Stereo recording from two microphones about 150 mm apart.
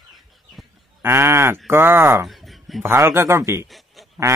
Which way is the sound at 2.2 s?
Centre (ahead or behind).